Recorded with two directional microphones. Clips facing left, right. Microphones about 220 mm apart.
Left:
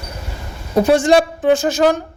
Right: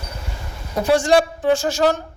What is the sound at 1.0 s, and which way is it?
Speech, 20° left (ahead or behind).